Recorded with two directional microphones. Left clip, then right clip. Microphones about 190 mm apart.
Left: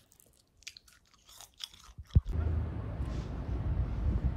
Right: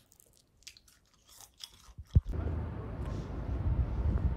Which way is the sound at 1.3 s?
10° right (ahead or behind).